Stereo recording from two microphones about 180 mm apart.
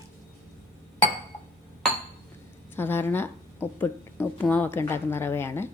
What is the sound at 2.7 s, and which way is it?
Speech, 10° left (ahead or behind).